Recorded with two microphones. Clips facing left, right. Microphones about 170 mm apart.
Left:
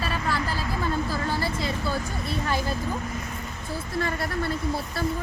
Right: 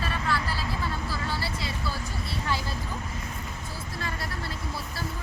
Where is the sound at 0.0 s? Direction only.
45° left (ahead or behind).